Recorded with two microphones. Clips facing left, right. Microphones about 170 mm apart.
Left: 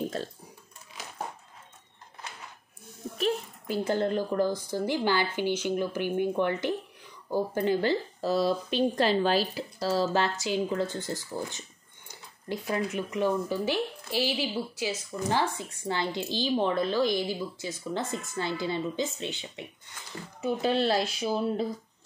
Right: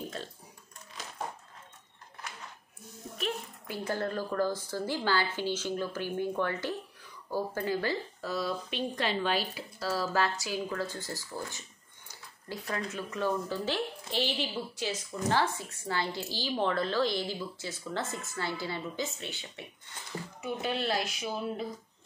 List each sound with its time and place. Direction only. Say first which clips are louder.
3.2 s speech: left 7 dB; 35° left (ahead or behind)
12.7 s speech: left 6 dB; 15° left (ahead or behind)
20.4 s speech: left 7 dB; 30° left (ahead or behind)